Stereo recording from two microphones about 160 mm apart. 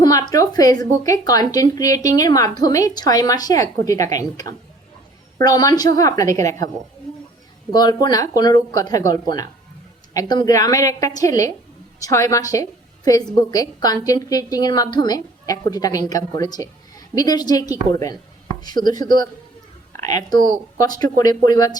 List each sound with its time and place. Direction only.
0.0 s a woman's voice: 25° left (ahead or behind)
7.7 s a woman's voice: 25° left (ahead or behind)